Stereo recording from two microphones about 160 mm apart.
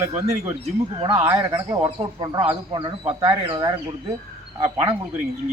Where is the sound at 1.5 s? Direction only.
25° right (ahead or behind).